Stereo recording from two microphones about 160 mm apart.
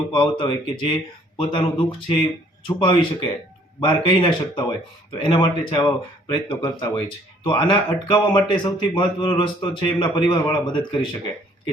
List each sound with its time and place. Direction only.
0.1 s a man's voice: 30° left (ahead or behind)
1.4 s a sound: 30° left (ahead or behind)
3.8 s a man's voice: 30° left (ahead or behind)